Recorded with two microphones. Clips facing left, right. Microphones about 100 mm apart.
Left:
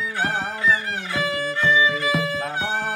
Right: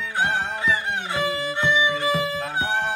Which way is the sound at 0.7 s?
20° right (ahead or behind).